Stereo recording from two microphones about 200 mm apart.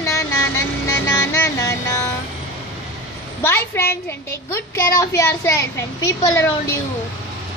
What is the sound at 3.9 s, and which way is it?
A child's voice, 10° left (ahead or behind).